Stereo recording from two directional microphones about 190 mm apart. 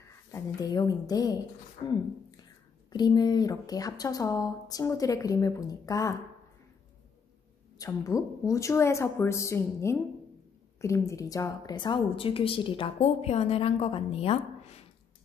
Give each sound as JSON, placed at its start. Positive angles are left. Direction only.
{"t": 0.3, "sound": "a woman's voice", "side_deg": 20}
{"t": 7.8, "sound": "a woman's voice", "side_deg": 15}